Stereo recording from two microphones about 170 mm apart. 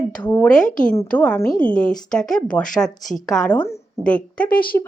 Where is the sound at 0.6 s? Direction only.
50° left (ahead or behind).